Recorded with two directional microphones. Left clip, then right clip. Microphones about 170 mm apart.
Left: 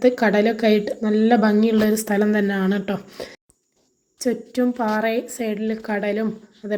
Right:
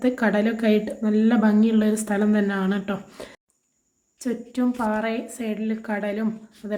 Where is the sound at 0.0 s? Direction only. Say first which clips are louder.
Left 5 dB; 10° left (ahead or behind).